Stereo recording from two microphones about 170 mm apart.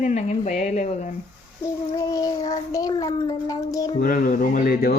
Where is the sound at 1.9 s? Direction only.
20° left (ahead or behind).